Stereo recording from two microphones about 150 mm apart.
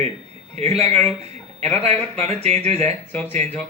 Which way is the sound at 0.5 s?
45° right (ahead or behind).